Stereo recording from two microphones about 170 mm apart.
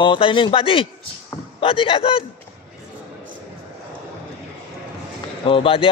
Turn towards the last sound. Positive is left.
turn(degrees=30)  # may be behind; listen again after turning